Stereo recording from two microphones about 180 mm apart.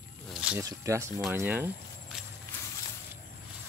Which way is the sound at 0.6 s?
15° right (ahead or behind).